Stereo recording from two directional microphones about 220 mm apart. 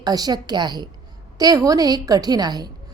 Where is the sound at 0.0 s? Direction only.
15° right (ahead or behind).